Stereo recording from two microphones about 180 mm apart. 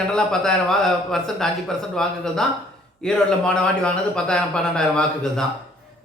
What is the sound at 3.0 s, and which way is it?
Speech, 5° left (ahead or behind).